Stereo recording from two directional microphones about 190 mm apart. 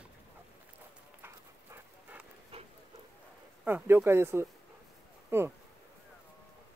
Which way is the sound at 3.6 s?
10° right (ahead or behind).